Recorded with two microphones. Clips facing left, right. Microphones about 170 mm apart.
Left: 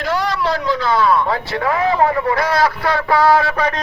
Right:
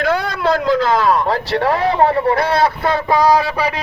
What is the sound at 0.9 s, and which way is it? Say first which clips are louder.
A man's voice: right 1 dB; 40° right (ahead or behind).